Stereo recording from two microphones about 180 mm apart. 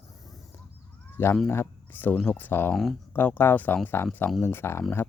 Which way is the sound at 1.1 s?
10° left (ahead or behind).